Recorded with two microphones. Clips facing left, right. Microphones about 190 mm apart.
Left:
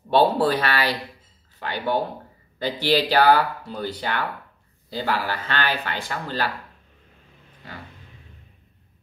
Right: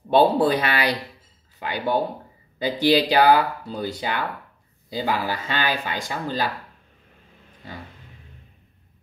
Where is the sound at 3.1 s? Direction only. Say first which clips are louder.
Right 1 dB; 15° right (ahead or behind).